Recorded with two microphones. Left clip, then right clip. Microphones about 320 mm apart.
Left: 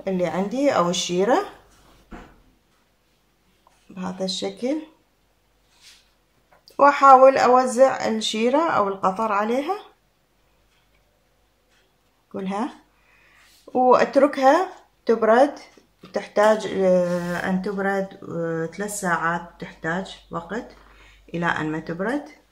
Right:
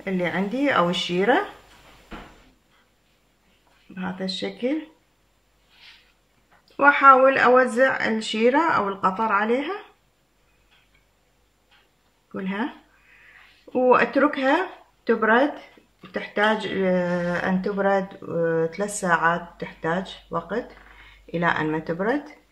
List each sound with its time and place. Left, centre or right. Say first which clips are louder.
0.0 s speech: left 2 dB; centre
3.9 s speech: left 2 dB; centre
6.8 s speech: left 2 dB; centre
12.4 s speech: left 2 dB; centre
13.8 s speech: left 2 dB; centre